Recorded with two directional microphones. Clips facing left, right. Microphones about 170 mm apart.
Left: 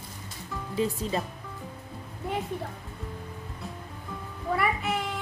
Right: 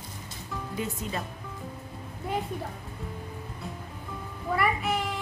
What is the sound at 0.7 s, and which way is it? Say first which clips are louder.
Speech: left 6 dB; 30° left (ahead or behind).